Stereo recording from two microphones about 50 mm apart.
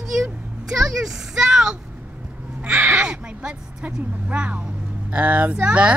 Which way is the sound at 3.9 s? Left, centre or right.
Right.